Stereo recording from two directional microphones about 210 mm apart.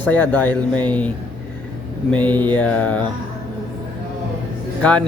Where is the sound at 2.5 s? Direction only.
5° left (ahead or behind).